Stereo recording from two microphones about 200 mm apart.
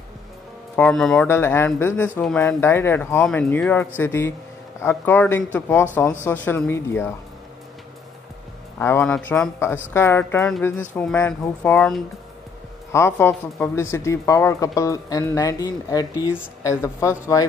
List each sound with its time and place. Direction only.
0.7 s speech: 5° left (ahead or behind)
8.7 s speech: 10° left (ahead or behind)